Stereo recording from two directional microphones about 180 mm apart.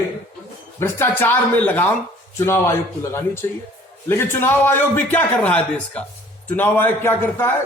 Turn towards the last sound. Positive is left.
turn(degrees=10)  # may be behind; listen again after turning